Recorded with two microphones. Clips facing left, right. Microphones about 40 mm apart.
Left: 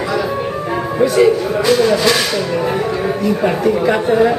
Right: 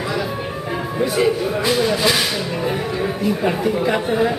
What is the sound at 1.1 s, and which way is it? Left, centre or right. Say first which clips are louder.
Speech: left 5 dB; centre.